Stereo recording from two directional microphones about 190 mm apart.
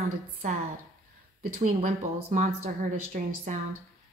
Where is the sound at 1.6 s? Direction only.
40° right (ahead or behind).